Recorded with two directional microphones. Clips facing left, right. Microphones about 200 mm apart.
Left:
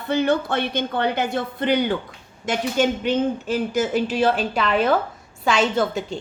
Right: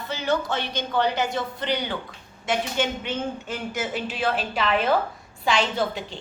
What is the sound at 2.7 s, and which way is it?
Speech, 35° left (ahead or behind).